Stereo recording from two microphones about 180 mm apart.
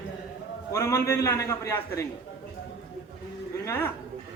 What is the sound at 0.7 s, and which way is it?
A man's voice, 15° left (ahead or behind).